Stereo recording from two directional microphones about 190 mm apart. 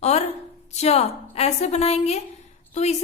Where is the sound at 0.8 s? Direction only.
35° left (ahead or behind).